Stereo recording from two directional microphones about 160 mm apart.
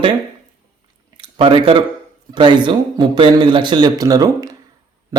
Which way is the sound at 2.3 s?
30° right (ahead or behind).